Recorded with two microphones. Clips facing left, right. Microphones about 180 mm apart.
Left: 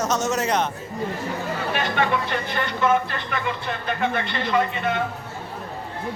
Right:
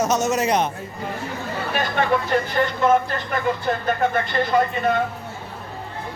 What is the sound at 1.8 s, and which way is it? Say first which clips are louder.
Speech: right 3 dB; 40° right (ahead or behind).